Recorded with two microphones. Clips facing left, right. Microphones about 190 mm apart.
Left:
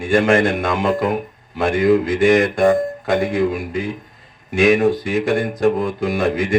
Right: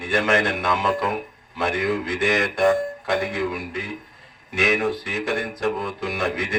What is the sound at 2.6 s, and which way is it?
A man's voice, 25° left (ahead or behind).